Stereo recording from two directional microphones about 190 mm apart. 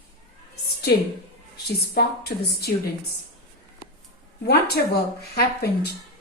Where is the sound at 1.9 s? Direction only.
55° left (ahead or behind).